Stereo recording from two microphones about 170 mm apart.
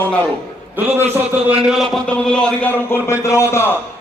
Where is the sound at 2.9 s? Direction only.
15° left (ahead or behind).